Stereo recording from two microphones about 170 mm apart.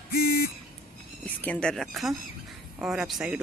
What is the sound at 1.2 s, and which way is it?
Speech, 10° left (ahead or behind).